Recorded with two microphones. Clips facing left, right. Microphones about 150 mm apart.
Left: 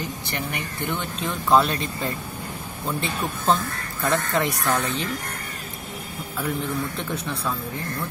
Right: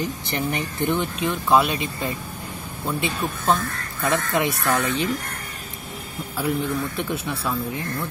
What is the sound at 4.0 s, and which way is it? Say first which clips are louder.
Speech: right 1 dB; 10° right (ahead or behind).